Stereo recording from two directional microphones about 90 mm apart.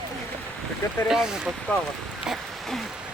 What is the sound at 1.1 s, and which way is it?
Speech, 5° right (ahead or behind).